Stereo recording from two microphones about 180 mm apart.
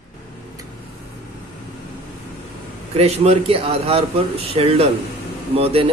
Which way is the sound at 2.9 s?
35° right (ahead or behind).